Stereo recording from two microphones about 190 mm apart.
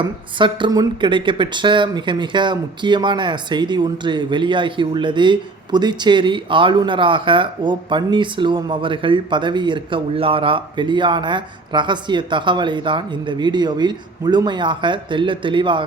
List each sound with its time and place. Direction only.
0.0 s speech: 25° right (ahead or behind)